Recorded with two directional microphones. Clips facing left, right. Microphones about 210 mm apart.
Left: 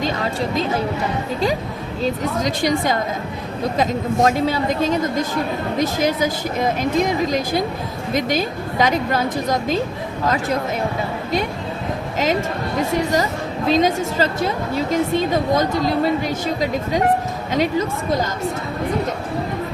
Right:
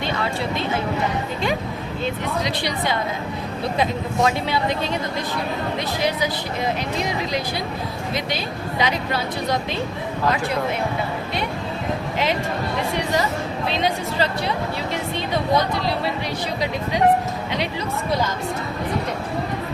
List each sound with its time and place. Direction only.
0.0 s speech: 40° left (ahead or behind)
2.4 s a woman's voice: 45° left (ahead or behind)
12.9 s a woman's voice: 40° left (ahead or behind)
17.5 s a woman's voice: 45° left (ahead or behind)